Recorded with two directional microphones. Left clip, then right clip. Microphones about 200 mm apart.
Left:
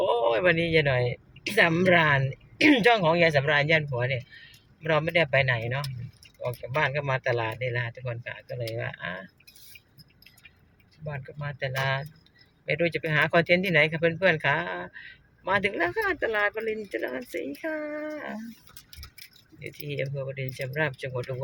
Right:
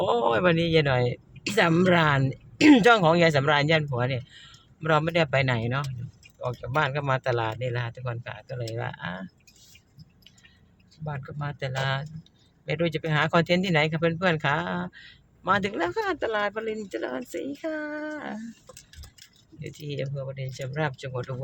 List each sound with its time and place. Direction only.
0.0 s speech: 15° right (ahead or behind)
11.0 s speech: 15° right (ahead or behind)
19.5 s speech: 15° right (ahead or behind)